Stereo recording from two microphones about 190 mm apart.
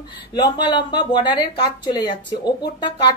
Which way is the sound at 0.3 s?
25° left (ahead or behind).